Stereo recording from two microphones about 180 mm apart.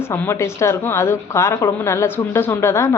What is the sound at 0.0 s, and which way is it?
A woman's voice, 15° left (ahead or behind).